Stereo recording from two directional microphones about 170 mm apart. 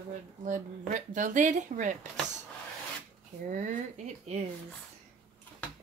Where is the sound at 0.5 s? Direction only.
50° right (ahead or behind).